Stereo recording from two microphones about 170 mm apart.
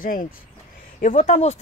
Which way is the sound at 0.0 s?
55° left (ahead or behind).